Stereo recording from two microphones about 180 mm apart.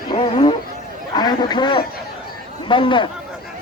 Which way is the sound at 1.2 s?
25° left (ahead or behind).